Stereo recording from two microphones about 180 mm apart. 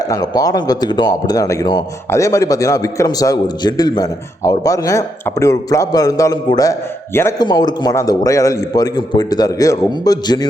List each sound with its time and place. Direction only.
0.1 s a man's voice: 20° left (ahead or behind)